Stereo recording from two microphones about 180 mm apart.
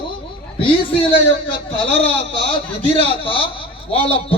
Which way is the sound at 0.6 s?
30° left (ahead or behind).